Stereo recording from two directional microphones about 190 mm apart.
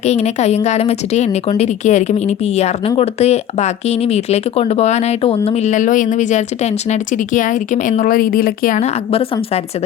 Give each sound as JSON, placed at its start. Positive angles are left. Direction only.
{"t": 0.0, "sound": "a woman's voice", "side_deg": 35}